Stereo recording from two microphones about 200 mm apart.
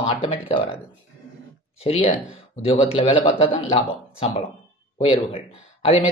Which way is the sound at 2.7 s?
30° left (ahead or behind).